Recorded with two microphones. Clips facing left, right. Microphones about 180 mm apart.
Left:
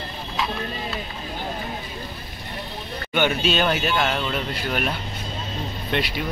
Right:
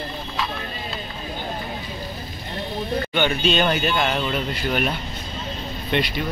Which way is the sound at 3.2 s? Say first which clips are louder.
Even; 5° left (ahead or behind).